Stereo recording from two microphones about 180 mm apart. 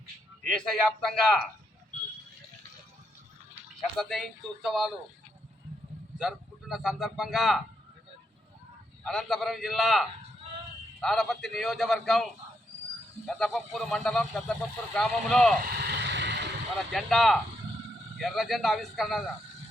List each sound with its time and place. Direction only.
0.4 s a man's voice: 5° left (ahead or behind)
3.9 s a man's voice: centre (ahead or behind)
6.1 s speech: centre (ahead or behind)
9.0 s a man's voice: centre (ahead or behind)
15.6 s a sound: 60° right (ahead or behind)
16.9 s a man's voice: centre (ahead or behind)